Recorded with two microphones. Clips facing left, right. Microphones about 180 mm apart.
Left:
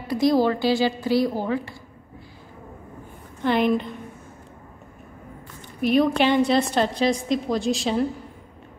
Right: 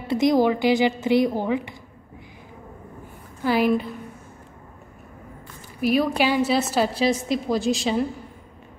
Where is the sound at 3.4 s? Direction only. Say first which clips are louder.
Even; 5° right (ahead or behind).